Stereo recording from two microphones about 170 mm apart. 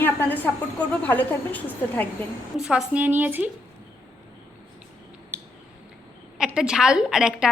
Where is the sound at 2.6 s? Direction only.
5° right (ahead or behind).